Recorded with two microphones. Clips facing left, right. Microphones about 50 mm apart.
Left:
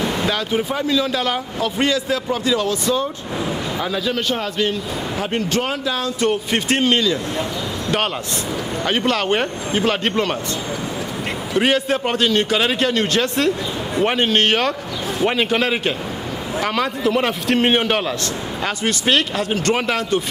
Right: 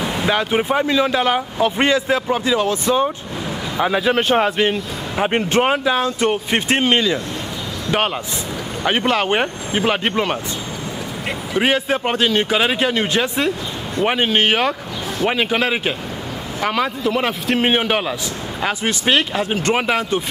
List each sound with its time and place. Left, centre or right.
0.0 s vehicle: centre
0.3 s a man's voice: right
8.8 s a man's voice: centre
11.5 s a man's voice: centre